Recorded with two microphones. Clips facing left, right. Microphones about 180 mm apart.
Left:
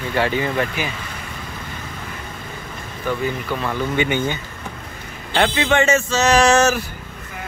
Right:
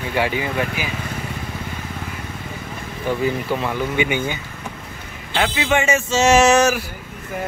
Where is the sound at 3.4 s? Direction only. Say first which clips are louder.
Right 2 dB; 25° right (ahead or behind).